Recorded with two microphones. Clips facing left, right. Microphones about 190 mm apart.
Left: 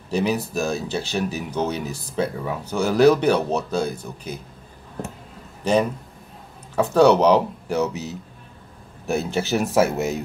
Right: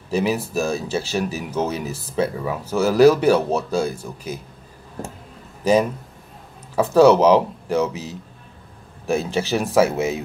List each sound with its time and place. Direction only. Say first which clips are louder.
0.1 s speech: right 1 dB; centre (ahead or behind)
5.6 s a man's voice: right 3 dB; 5° right (ahead or behind)
7.0 s speech: right 2 dB; centre (ahead or behind)